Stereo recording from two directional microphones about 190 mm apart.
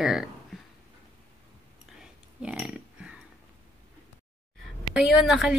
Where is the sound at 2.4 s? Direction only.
5° right (ahead or behind).